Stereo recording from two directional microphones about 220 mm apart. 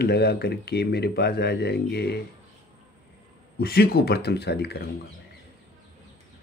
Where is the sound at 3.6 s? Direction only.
45° left (ahead or behind).